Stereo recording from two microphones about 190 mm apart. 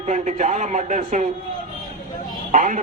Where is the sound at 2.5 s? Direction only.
40° right (ahead or behind).